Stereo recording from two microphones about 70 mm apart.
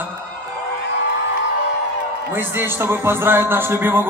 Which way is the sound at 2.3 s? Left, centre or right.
Right.